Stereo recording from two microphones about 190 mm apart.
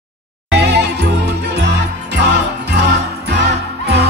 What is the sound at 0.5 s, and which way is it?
Music, 60° right (ahead or behind).